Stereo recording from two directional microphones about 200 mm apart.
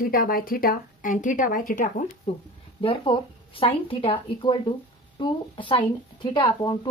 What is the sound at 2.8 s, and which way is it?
Speech, 25° left (ahead or behind).